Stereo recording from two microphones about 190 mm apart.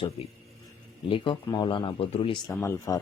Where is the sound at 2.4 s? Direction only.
15° left (ahead or behind).